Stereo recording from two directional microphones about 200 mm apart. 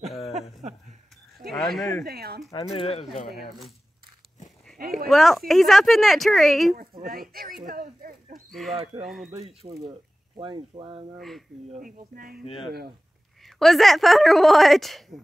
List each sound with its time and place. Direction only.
1.5 s a sound: centre (ahead or behind)
2.0 s speech: 50° right (ahead or behind)
2.7 s speech: 30° left (ahead or behind)
4.7 s speech: 45° right (ahead or behind)
5.1 s a woman's voice: centre (ahead or behind)
6.8 s speech: 45° right (ahead or behind)
7.6 s a sound: 45° right (ahead or behind)
8.3 s a sound: centre (ahead or behind)
9.0 s a woman's voice: centre (ahead or behind)
9.3 s speech: 30° right (ahead or behind)
11.1 s a woman's voice: centre (ahead or behind)
11.7 s speech: 45° right (ahead or behind)
12.4 s speech: 25° left (ahead or behind)
13.4 s a woman's voice: centre (ahead or behind)